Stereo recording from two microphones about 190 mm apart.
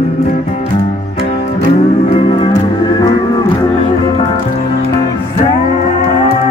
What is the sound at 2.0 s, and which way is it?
Music, 25° left (ahead or behind).